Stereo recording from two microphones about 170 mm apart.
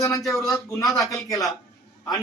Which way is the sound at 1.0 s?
20° left (ahead or behind).